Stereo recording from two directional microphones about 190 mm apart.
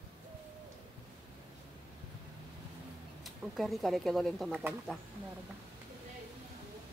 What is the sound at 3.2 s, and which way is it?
Speech, centre (ahead or behind).